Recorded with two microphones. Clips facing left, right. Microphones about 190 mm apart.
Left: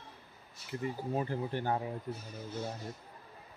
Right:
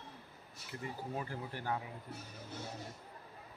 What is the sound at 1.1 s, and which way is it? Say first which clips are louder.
Speech: left 8 dB; 25° left (ahead or behind).